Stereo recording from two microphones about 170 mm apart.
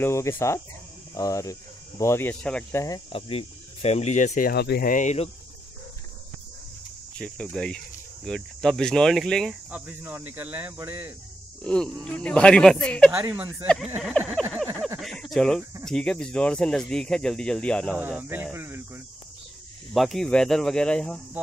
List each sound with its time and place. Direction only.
0.0 s speech: 15° left (ahead or behind)
3.1 s speech: 35° left (ahead or behind); by 4.9 s 70° left (ahead or behind)
4.9 s speech: 40° left (ahead or behind)
7.2 s speech: 5° left (ahead or behind)
9.7 s speech: 10° right (ahead or behind)
11.6 s speech: 5° left (ahead or behind)
13.3 s speech: 15° right (ahead or behind)
14.5 s a sound: centre (ahead or behind)
15.3 s speech: 5° left (ahead or behind)
18.3 s a sound: 15° right (ahead or behind)
19.9 s speech: centre (ahead or behind)